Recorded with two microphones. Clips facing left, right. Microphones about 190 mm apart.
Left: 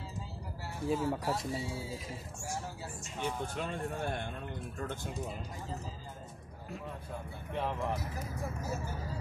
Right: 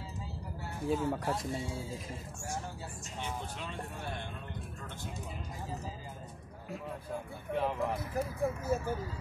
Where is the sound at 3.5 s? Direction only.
50° left (ahead or behind).